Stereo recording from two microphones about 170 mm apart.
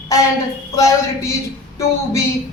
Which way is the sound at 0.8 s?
15° left (ahead or behind).